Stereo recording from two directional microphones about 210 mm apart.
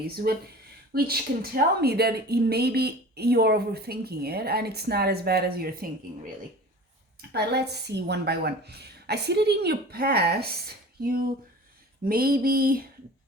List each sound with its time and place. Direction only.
0.0 s a woman's voice: 45° right (ahead or behind)
7.2 s a woman's voice: 50° right (ahead or behind)